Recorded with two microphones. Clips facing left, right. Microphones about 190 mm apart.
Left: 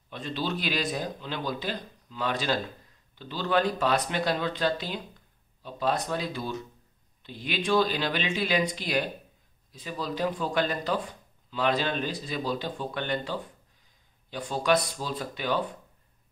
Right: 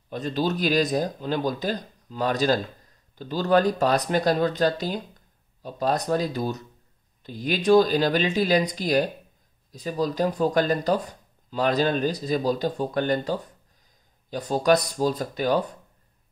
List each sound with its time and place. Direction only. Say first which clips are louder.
0.1 s speech: right 6 dB; 40° right (ahead or behind)